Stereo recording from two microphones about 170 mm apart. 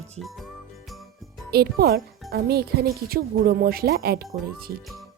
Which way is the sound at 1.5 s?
65° right (ahead or behind).